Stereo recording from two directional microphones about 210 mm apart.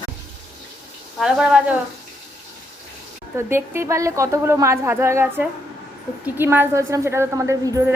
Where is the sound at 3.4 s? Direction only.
10° right (ahead or behind).